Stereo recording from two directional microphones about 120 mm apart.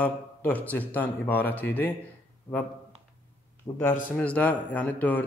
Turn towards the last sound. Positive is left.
turn(degrees=15)  # may be behind; listen again after turning